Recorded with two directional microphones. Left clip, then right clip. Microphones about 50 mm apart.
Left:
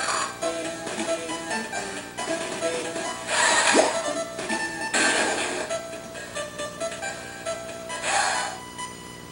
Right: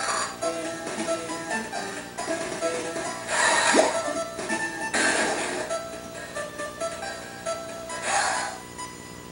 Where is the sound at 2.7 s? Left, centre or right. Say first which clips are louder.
Left 1 dB; left.